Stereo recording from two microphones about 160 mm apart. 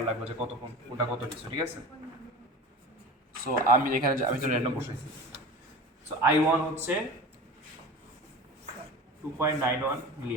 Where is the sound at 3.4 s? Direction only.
60° right (ahead or behind).